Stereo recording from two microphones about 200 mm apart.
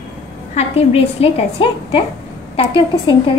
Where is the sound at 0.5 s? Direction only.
30° left (ahead or behind).